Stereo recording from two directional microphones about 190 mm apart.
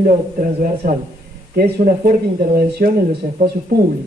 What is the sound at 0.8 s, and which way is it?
Speech, 45° right (ahead or behind).